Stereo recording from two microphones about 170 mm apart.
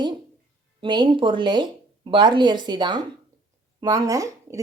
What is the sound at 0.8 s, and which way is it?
Speech, 30° right (ahead or behind).